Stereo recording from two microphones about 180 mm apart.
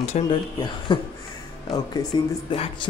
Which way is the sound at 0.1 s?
40° left (ahead or behind).